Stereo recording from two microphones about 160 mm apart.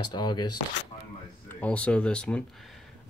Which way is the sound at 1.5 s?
10° left (ahead or behind).